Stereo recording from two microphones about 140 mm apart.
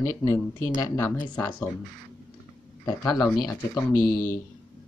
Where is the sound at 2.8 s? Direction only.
25° left (ahead or behind).